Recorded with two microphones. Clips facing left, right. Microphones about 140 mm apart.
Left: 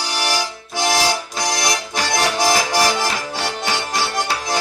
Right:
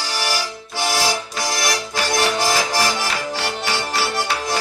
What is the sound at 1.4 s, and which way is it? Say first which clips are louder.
Music: left 1 dB; 20° left (ahead or behind).